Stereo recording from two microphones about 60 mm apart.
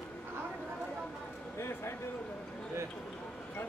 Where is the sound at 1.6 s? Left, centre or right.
Left.